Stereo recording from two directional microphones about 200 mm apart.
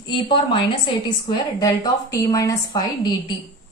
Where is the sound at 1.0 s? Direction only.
20° left (ahead or behind).